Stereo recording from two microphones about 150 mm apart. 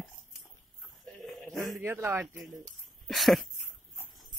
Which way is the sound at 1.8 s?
15° right (ahead or behind).